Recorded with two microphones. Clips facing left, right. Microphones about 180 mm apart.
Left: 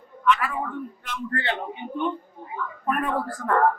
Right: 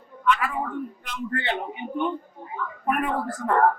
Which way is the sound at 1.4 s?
15° right (ahead or behind).